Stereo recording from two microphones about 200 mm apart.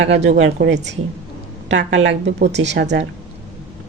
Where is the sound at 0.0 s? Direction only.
60° right (ahead or behind).